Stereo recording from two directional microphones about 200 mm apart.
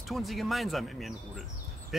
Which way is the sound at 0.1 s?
Centre (ahead or behind).